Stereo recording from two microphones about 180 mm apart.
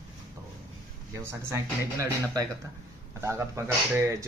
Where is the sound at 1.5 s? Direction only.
15° right (ahead or behind).